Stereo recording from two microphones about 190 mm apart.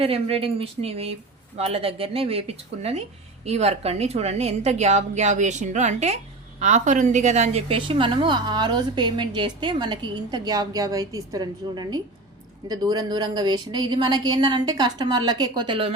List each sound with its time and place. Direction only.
0.0 s a woman's voice: 30° right (ahead or behind)